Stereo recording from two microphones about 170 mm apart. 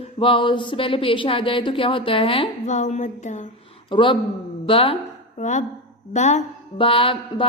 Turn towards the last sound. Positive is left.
turn(degrees=30)  # may be behind; listen again after turning